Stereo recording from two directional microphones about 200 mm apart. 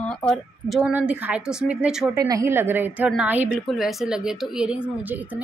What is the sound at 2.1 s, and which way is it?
Speech, 15° right (ahead or behind).